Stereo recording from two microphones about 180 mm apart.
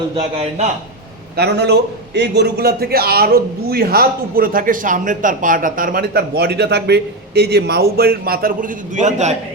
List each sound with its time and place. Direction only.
0.3 s a man's voice: 40° right (ahead or behind)
1.4 s a man's voice: 65° right (ahead or behind); by 9.3 s 40° right (ahead or behind)